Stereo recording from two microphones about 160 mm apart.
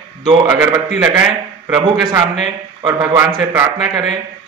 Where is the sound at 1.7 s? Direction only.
30° right (ahead or behind).